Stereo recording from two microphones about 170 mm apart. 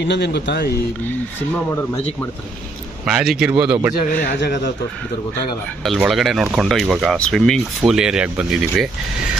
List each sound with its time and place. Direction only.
0.0 s speech: 85° left
3.1 s speech: 5° right (ahead or behind)
3.9 s speech: 45° left (ahead or behind)
5.9 s speech: centre (ahead or behind)